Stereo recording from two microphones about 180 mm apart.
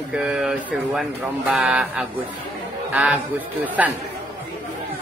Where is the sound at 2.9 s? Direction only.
10° right (ahead or behind).